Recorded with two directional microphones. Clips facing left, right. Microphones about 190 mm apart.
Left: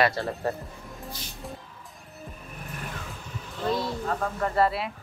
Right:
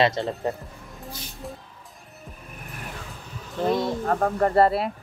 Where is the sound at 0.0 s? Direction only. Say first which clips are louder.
Right 2 dB; 20° right (ahead or behind).